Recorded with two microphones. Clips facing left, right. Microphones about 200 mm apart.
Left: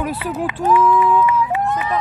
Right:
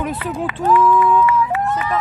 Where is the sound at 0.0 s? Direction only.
10° left (ahead or behind).